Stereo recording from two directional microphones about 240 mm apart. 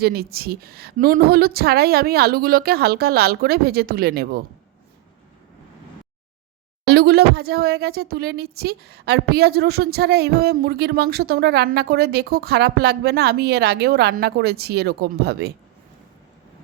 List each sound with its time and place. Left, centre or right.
0.0 s speech: right
6.8 s speech: right